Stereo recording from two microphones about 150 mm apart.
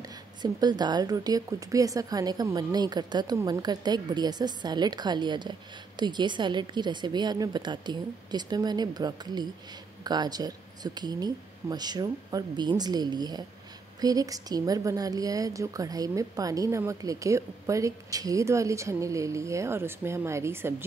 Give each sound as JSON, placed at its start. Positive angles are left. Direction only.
{"t": 0.4, "sound": "a woman's voice", "side_deg": -30}